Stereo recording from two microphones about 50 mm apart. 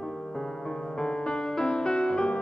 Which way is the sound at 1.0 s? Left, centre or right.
Centre.